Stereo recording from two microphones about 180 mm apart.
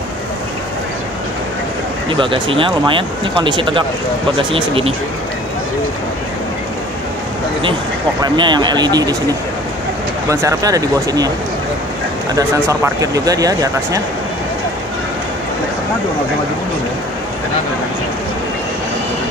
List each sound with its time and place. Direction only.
2.0 s speech: 25° right (ahead or behind)
8.2 s speech: 25° right (ahead or behind)
10.3 s speech: 20° right (ahead or behind)
12.4 s speech: 15° right (ahead or behind)